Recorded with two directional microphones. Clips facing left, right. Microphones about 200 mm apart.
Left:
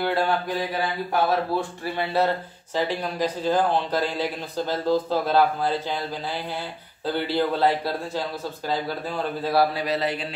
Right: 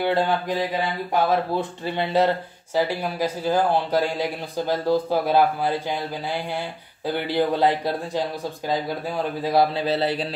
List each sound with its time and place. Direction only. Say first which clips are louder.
0.0 s mantra: right 2 dB; 20° right (ahead or behind)
1.3 s speech: right 1 dB; 20° right (ahead or behind)